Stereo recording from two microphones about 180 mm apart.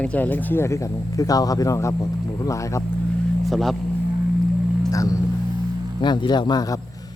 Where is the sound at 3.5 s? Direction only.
Centre (ahead or behind).